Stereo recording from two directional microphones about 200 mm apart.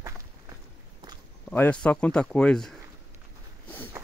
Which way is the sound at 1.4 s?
5° left (ahead or behind).